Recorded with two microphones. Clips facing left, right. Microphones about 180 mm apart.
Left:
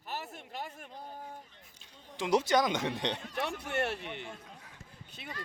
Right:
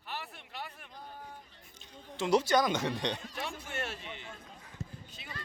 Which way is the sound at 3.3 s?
65° left (ahead or behind).